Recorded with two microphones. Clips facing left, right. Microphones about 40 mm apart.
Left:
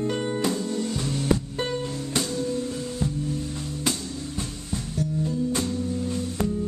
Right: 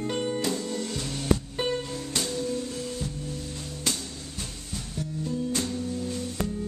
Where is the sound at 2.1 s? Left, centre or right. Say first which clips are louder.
Left 2 dB; centre.